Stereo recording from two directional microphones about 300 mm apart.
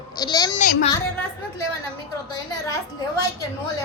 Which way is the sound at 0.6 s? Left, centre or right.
Left.